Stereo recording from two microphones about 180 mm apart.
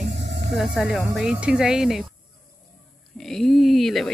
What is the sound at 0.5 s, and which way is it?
A woman's voice, centre (ahead or behind).